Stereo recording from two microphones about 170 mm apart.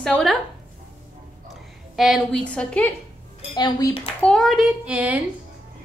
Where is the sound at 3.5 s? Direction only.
25° left (ahead or behind).